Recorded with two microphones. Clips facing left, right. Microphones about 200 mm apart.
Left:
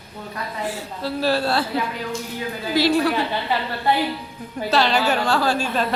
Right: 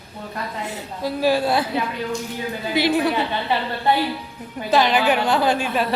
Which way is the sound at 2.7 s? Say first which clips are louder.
Left 1 dB; 20° right (ahead or behind).